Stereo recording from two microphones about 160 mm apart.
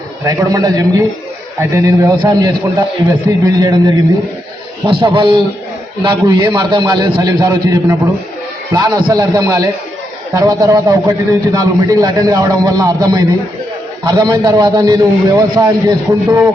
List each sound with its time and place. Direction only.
0.3 s a man's voice: 25° right (ahead or behind)